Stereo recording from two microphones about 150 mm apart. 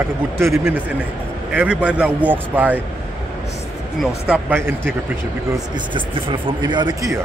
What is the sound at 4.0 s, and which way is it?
Speech, 5° right (ahead or behind).